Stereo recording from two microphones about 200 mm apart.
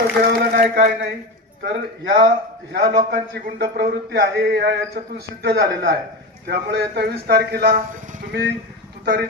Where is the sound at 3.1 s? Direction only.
55° right (ahead or behind).